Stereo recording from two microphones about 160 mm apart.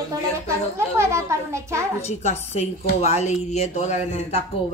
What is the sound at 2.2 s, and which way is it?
A woman's voice, 45° left (ahead or behind).